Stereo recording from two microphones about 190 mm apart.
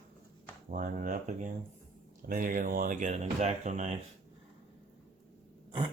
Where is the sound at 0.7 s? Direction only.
45° right (ahead or behind).